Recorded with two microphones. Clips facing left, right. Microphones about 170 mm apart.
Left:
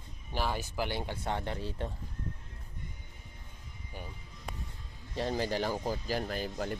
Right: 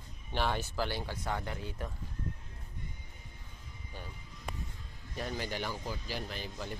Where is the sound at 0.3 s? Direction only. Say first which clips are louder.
Right 1 dB; 5° left (ahead or behind).